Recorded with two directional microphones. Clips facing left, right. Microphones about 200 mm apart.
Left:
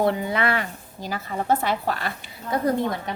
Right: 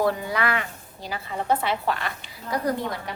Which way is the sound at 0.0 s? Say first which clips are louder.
Left 2 dB; 25° left (ahead or behind).